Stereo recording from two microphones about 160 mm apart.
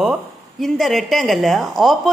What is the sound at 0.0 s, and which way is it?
Speech, centre (ahead or behind).